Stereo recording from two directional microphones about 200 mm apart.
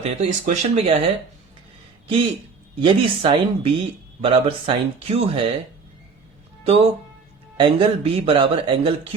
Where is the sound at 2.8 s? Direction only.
25° right (ahead or behind).